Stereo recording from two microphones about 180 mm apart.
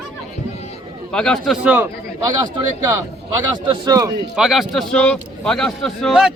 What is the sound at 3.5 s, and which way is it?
Speech, 25° right (ahead or behind).